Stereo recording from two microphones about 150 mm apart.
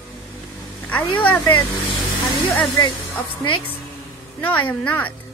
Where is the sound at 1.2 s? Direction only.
10° left (ahead or behind).